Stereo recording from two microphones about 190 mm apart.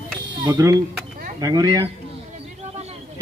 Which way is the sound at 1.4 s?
20° right (ahead or behind).